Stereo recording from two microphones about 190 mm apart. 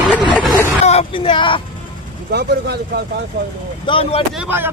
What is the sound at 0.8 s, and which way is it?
Speech, 30° left (ahead or behind).